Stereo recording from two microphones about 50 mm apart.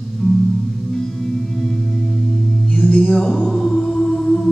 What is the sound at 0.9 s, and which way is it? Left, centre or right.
Music, centre.